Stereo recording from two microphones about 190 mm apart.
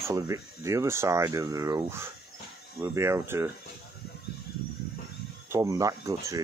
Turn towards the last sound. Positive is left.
turn(degrees=-15)  # may be behind; listen again after turning